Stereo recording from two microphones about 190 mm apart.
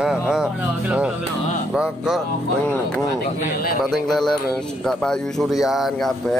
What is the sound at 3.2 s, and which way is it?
Speech, 50° left (ahead or behind).